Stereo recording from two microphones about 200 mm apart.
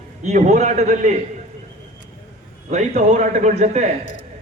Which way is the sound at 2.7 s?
35° right (ahead or behind).